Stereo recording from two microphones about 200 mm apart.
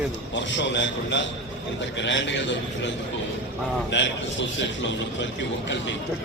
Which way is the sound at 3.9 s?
65° left (ahead or behind).